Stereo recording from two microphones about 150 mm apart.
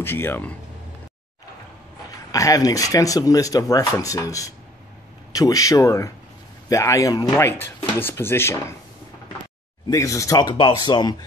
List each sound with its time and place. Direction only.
0.0 s speech: 15° left (ahead or behind)
2.3 s speech: 25° left (ahead or behind)
7.3 s speech: 15° left (ahead or behind)
9.8 s speech: 20° left (ahead or behind)